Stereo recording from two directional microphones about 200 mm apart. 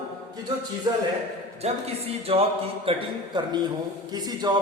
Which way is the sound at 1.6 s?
30° right (ahead or behind).